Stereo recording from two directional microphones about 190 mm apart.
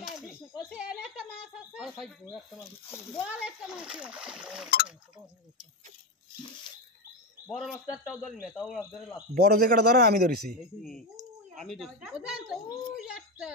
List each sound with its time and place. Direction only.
0.6 s a sound: 5° right (ahead or behind)
3.2 s speech: 5° right (ahead or behind)
7.4 s speech: centre (ahead or behind)
9.3 s speech: 55° right (ahead or behind)
10.8 s speech: centre (ahead or behind)